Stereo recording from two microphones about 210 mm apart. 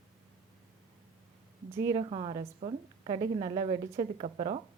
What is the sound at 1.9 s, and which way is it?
A woman's voice, 25° right (ahead or behind).